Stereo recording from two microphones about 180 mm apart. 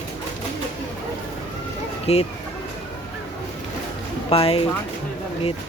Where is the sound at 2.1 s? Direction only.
35° left (ahead or behind).